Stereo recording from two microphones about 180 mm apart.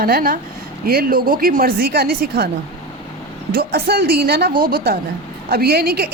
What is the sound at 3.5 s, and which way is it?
A woman's voice, 60° right (ahead or behind).